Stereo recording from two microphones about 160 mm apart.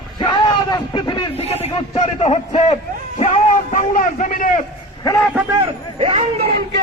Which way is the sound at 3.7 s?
55° left (ahead or behind).